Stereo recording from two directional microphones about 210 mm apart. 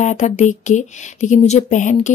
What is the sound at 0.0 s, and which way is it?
Speech, 35° left (ahead or behind).